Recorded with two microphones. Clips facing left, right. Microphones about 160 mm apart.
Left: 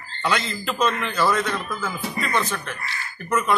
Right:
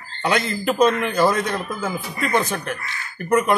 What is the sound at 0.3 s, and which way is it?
Speech, 50° right (ahead or behind).